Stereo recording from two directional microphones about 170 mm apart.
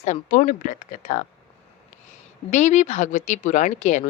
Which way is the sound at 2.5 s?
45° left (ahead or behind).